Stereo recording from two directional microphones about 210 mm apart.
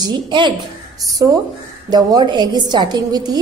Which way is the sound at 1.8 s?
20° right (ahead or behind).